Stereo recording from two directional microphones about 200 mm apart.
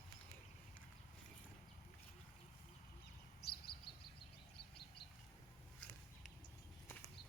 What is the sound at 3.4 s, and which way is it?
Bird, 50° left (ahead or behind).